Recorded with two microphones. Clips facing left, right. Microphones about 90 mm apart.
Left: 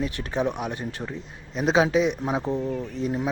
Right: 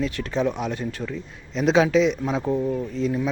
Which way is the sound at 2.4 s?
10° right (ahead or behind).